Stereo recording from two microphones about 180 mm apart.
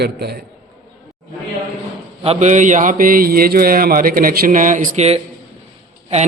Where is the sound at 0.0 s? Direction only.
65° right (ahead or behind).